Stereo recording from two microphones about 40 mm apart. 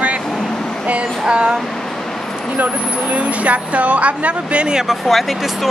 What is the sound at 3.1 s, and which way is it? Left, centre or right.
Speech, right.